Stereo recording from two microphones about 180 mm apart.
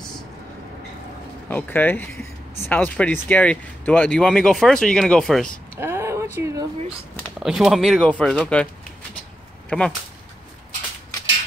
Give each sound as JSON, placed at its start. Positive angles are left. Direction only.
{"t": 1.5, "sound": "speech", "side_deg": 10}
{"t": 5.8, "sound": "a sound", "side_deg": -15}
{"t": 7.3, "sound": "speech", "side_deg": 0}
{"t": 9.7, "sound": "speech", "side_deg": 5}